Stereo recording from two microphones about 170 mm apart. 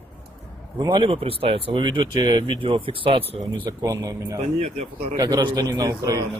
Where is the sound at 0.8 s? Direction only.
25° right (ahead or behind).